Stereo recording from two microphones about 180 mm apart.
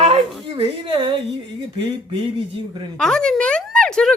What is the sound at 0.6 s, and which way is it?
Speech, 30° right (ahead or behind).